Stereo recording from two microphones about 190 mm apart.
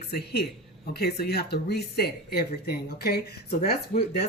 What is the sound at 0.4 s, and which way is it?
Speech, 60° left (ahead or behind).